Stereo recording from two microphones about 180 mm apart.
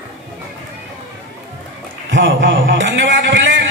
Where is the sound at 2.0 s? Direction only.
90° right.